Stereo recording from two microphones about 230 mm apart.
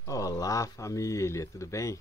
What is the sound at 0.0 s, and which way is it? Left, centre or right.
Speech, centre.